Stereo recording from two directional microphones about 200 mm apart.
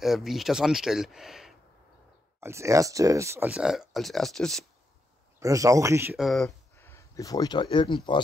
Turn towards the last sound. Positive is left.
turn(degrees=25)  # may be behind; listen again after turning